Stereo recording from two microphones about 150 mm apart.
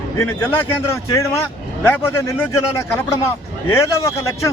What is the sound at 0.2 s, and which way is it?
A man's voice, 15° left (ahead or behind).